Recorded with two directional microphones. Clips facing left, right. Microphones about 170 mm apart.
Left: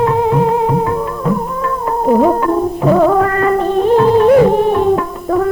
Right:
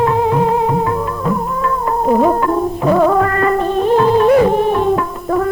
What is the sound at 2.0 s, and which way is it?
Music, 20° left (ahead or behind).